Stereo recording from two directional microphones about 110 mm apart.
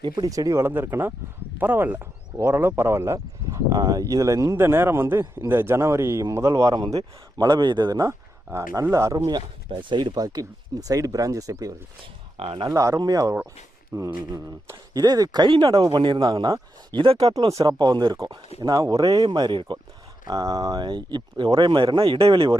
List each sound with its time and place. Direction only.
0.0 s speech: 35° right (ahead or behind)
8.5 s speech: 25° right (ahead or behind)
12.4 s speech: 55° right (ahead or behind)
12.6 s speech: 30° right (ahead or behind); by 17.3 s 60° right (ahead or behind)
17.5 s speech: 30° right (ahead or behind)
17.7 s speech: 40° right (ahead or behind)
20.2 s speech: 35° right (ahead or behind)